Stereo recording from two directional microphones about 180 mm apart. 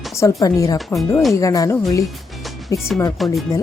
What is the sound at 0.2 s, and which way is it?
Speech, 15° left (ahead or behind).